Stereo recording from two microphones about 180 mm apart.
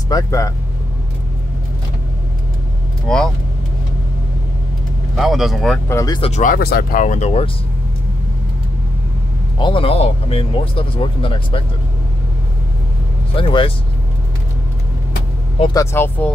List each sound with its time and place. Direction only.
0.1 s speech: 15° left (ahead or behind)
3.1 s speech: 5° left (ahead or behind)
5.1 s speech: centre (ahead or behind)
5.9 s speech: 20° left (ahead or behind)
6.3 s speech: 50° left (ahead or behind)
9.6 s speech: 30° left (ahead or behind)
13.4 s speech: 30° left (ahead or behind)
15.6 s speech: 20° left (ahead or behind)